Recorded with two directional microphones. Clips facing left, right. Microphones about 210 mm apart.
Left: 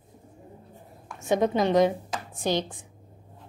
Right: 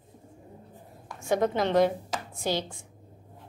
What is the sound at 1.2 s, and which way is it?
A woman's voice, 20° left (ahead or behind).